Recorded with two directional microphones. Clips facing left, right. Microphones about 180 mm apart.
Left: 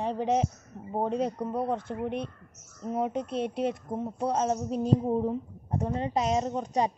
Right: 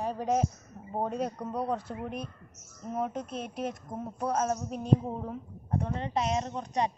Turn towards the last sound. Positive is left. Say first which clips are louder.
# left 4 dB
turn(degrees=35)  # may be behind; listen again after turning